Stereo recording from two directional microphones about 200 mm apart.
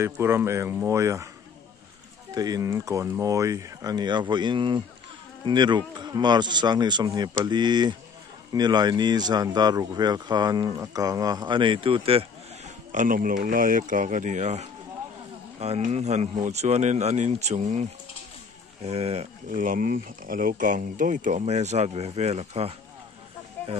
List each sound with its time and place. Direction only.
0.0 s speech: 10° right (ahead or behind)
2.3 s speech: 20° right (ahead or behind)
12.9 s speech: 40° right (ahead or behind)
18.9 s speech: 30° right (ahead or behind)